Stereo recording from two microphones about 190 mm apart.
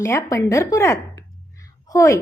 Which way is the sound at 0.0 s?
15° left (ahead or behind).